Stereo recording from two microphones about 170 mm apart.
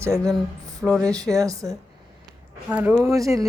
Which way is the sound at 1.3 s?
20° right (ahead or behind).